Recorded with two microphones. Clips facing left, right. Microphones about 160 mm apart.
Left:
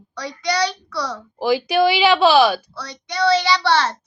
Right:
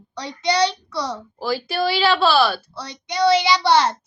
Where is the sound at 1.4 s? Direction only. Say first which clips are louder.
Left 6 dB; 15° left (ahead or behind).